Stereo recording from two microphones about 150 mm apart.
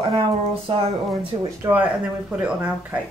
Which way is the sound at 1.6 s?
10° right (ahead or behind).